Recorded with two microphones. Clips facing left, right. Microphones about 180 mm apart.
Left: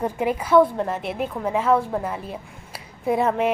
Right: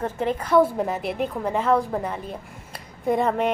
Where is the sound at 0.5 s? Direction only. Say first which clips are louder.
Left 2 dB; 5° right (ahead or behind).